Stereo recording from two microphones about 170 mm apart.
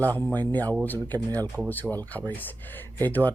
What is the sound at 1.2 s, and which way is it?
Speech, 20° right (ahead or behind).